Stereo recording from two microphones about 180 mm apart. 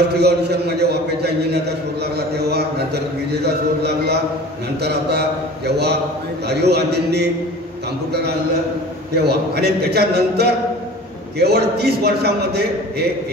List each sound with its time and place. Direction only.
0.1 s a man's voice: 65° right (ahead or behind)
5.7 s a man's voice: 65° right (ahead or behind)